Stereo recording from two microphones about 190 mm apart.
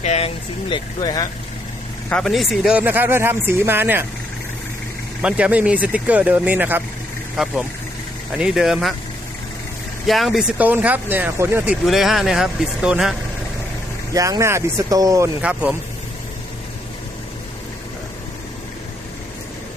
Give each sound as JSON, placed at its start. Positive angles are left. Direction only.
{"t": 0.0, "sound": "vehicle", "side_deg": 35}
{"t": 0.7, "sound": "speech", "side_deg": 20}
{"t": 2.0, "sound": "speech", "side_deg": 0}
{"t": 5.2, "sound": "speech", "side_deg": -5}
{"t": 10.1, "sound": "speech", "side_deg": 0}
{"t": 14.1, "sound": "speech", "side_deg": -20}